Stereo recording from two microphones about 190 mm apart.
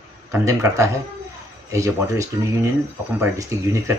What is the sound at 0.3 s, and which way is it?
Speech, 15° right (ahead or behind).